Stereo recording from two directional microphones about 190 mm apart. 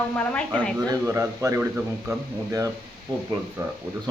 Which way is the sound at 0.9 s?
15° right (ahead or behind).